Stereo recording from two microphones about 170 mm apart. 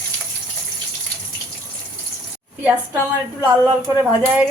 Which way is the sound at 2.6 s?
10° right (ahead or behind).